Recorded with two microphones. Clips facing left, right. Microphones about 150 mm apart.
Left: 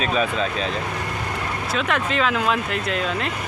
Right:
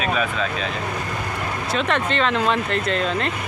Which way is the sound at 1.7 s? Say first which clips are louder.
Right 2 dB; centre (ahead or behind).